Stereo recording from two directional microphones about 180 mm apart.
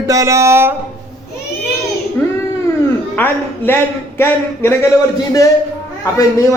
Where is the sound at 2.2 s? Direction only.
10° left (ahead or behind).